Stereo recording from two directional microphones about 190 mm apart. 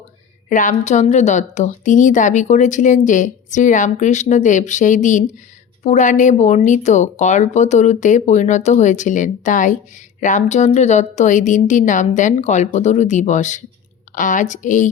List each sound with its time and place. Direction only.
0.5 s speech: 40° left (ahead or behind)